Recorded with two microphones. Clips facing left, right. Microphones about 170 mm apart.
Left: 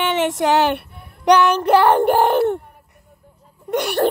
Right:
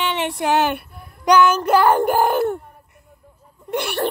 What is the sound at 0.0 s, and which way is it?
A child's voice, 50° left (ahead or behind).